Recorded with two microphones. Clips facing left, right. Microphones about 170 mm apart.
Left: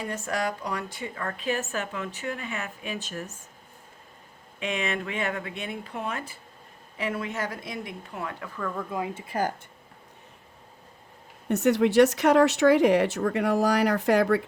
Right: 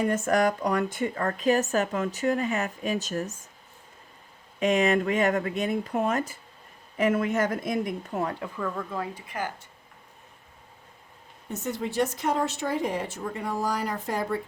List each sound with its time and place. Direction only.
0.0 s speech: 50° right (ahead or behind)
4.6 s speech: 40° right (ahead or behind)
8.9 s speech: 15° left (ahead or behind)
9.2 s speech: 35° left (ahead or behind)
11.4 s speech: 70° left (ahead or behind)